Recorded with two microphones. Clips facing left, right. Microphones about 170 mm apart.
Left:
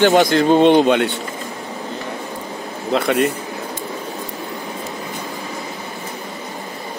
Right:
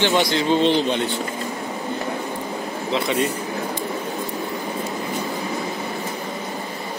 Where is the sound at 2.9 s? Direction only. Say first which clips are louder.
Left 5 dB; 55° left (ahead or behind).